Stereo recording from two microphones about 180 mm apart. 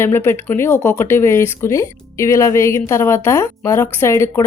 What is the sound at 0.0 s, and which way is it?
A woman's voice, 15° left (ahead or behind).